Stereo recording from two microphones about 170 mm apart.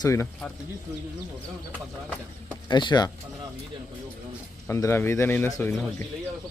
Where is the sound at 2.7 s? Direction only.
25° left (ahead or behind).